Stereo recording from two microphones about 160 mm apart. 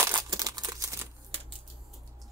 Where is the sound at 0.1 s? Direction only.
25° right (ahead or behind).